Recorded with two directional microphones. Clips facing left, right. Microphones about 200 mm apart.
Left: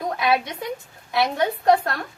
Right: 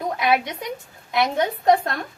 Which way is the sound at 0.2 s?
20° right (ahead or behind).